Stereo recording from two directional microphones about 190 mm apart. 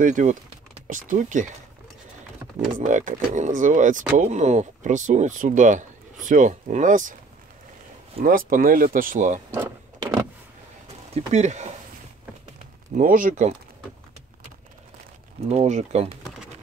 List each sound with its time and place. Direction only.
0.0 s speech: 40° right (ahead or behind)
2.8 s speech: 40° right (ahead or behind)
8.2 s speech: 50° right (ahead or behind)
9.5 s vehicle: 15° right (ahead or behind)
11.1 s speech: 35° right (ahead or behind)
12.9 s speech: 45° right (ahead or behind)
15.4 s speech: 35° right (ahead or behind)